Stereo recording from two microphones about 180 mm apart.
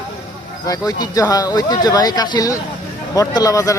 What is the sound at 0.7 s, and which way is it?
Speech, 20° left (ahead or behind).